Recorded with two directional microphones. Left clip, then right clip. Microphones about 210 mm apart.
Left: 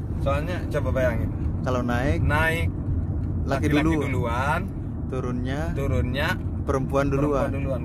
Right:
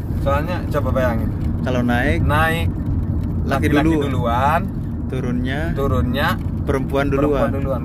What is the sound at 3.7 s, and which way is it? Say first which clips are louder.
Speech: right 6 dB; 10° left (ahead or behind).